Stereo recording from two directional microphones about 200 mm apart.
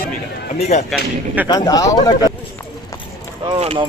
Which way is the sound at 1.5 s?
20° left (ahead or behind).